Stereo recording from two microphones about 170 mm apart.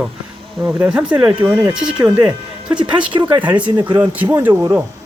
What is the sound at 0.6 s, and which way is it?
Mantra, 10° right (ahead or behind).